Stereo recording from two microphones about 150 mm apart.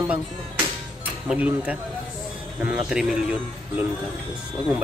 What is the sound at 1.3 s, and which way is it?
Speech, 5° right (ahead or behind).